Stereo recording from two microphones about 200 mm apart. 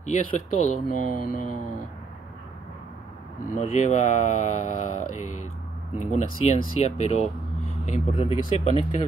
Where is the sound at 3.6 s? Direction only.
35° left (ahead or behind).